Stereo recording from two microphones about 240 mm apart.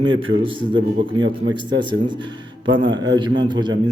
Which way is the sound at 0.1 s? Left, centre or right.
Right.